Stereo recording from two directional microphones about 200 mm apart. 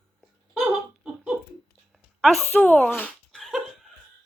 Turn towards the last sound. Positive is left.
turn(degrees=0)  # may be behind; listen again after turning